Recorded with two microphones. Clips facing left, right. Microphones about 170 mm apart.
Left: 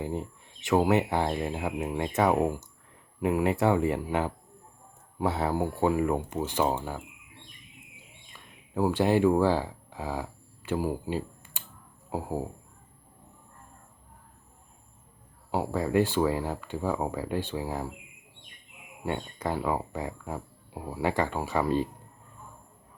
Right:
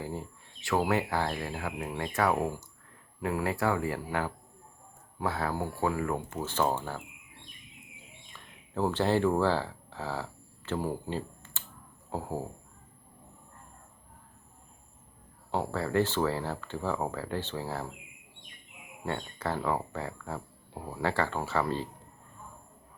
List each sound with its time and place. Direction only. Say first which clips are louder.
0.0 s speech: left 5 dB; 20° left (ahead or behind)
8.3 s a sound: left 2 dB; 10° left (ahead or behind)
12.1 s speech: left 3 dB; 10° left (ahead or behind)
15.5 s speech: left 3 dB; 10° left (ahead or behind)
19.0 s speech: left 2 dB; 15° left (ahead or behind)